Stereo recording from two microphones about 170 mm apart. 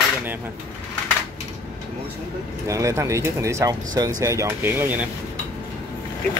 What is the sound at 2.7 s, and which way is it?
Speech, 20° right (ahead or behind).